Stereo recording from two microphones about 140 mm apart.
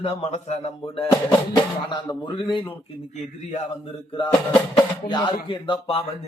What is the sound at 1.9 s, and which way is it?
Speech, 35° left (ahead or behind).